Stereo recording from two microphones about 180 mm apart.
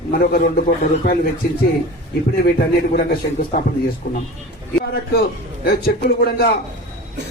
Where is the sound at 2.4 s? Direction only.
55° left (ahead or behind).